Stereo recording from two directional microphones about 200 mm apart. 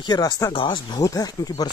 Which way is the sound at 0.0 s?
20° left (ahead or behind).